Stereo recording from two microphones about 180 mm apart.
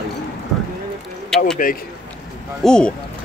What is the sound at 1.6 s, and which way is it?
Speech, 50° left (ahead or behind).